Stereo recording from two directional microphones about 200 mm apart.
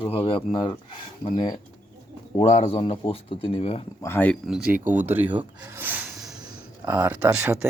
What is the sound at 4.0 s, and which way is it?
Speech, 10° left (ahead or behind).